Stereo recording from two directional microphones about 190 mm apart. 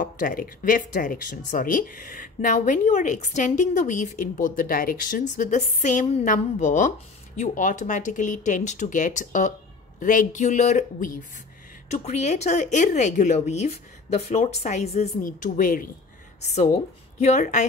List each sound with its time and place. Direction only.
0.0 s speech: 45° left (ahead or behind)
16.3 s speech: 35° left (ahead or behind)